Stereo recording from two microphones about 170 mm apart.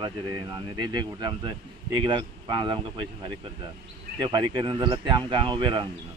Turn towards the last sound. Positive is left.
turn(degrees=-30)  # may be behind; listen again after turning